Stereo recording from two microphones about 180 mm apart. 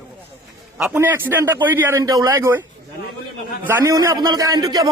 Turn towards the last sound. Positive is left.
turn(degrees=-20)  # may be behind; listen again after turning